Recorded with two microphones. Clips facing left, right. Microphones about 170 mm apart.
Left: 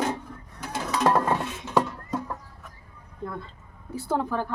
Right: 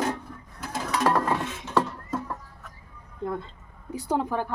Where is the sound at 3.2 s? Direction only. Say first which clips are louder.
Right 4 dB; 20° right (ahead or behind).